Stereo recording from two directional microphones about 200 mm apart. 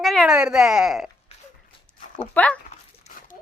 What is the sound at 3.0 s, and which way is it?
Dog, 40° left (ahead or behind).